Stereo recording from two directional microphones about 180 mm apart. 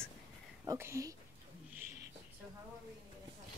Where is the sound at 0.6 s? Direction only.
15° right (ahead or behind).